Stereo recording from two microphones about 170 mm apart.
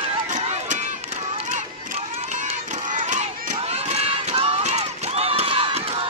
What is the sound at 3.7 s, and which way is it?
Run, 35° right (ahead or behind).